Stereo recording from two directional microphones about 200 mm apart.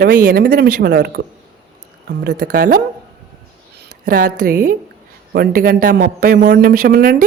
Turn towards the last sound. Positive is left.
turn(degrees=-50)  # may be behind; listen again after turning